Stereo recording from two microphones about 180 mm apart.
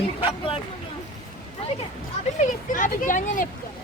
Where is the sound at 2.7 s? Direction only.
45° left (ahead or behind).